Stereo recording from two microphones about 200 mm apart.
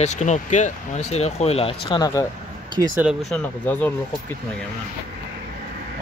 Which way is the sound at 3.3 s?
10° left (ahead or behind).